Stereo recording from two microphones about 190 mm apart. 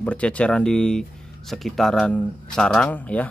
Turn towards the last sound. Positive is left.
turn(degrees=10)  # may be behind; listen again after turning